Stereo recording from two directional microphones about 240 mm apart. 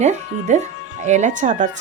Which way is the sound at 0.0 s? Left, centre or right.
Right.